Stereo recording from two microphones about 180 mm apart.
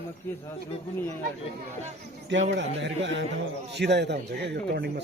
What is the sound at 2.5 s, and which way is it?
Speech, 80° right.